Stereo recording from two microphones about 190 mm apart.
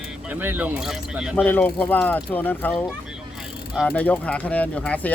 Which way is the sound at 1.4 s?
10° left (ahead or behind).